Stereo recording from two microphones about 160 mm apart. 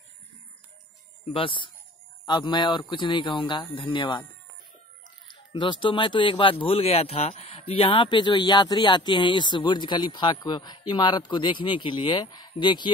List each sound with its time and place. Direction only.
1.2 s speech: 35° left (ahead or behind)
5.5 s speech: 30° left (ahead or behind)